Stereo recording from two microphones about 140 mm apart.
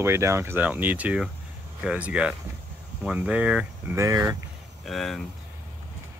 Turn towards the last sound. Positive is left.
turn(degrees=0)  # may be behind; listen again after turning